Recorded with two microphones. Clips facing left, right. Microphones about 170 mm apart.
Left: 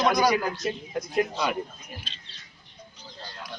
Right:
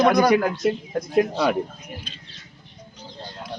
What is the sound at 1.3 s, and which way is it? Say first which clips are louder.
Speech: right 6 dB; 40° right (ahead or behind).